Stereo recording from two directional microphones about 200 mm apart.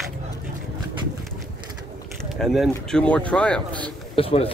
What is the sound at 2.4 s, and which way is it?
Speech, centre (ahead or behind).